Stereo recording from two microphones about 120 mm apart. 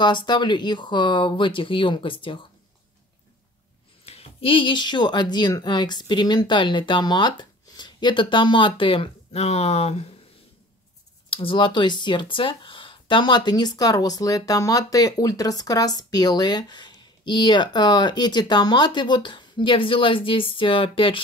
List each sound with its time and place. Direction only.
0.0 s speech: 40° left (ahead or behind)
4.0 s speech: 55° left (ahead or behind)
11.2 s speech: 50° left (ahead or behind)